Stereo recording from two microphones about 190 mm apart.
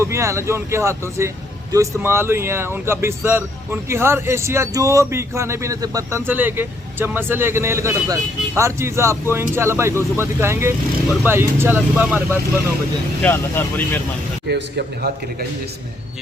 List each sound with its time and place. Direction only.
0.0 s speech: 15° right (ahead or behind)
13.2 s speech: 10° left (ahead or behind)
14.4 s a man's voice: 60° right (ahead or behind)